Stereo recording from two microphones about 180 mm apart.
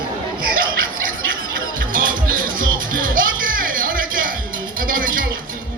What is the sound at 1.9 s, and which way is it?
Music, 50° right (ahead or behind).